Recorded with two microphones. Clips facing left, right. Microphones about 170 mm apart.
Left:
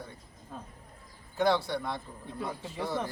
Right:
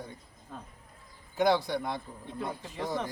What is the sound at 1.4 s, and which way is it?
A man's voice, 15° right (ahead or behind).